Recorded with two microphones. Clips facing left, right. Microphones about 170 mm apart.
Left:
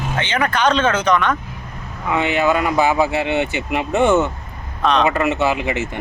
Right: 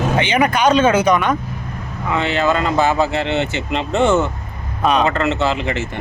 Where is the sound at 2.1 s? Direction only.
15° left (ahead or behind).